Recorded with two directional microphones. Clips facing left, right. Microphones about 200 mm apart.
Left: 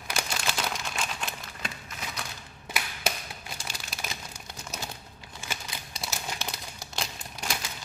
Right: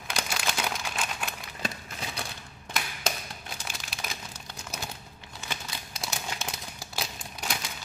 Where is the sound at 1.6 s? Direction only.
30° right (ahead or behind).